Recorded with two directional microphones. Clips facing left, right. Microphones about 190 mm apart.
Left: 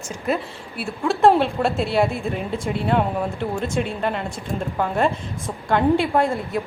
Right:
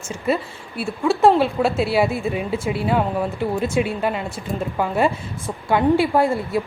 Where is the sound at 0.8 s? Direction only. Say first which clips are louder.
Right 2 dB; centre (ahead or behind).